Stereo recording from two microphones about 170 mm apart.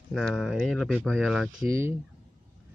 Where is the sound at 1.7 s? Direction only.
15° right (ahead or behind).